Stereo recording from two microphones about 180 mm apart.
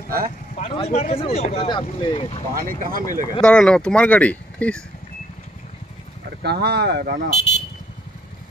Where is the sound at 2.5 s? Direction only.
50° right (ahead or behind).